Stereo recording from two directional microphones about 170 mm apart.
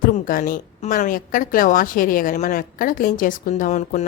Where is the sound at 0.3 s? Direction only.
55° left (ahead or behind).